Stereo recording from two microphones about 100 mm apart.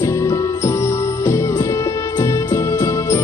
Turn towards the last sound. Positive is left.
turn(degrees=30)  # may be behind; listen again after turning